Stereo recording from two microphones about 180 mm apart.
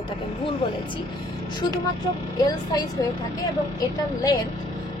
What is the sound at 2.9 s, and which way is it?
A woman's voice, 20° left (ahead or behind).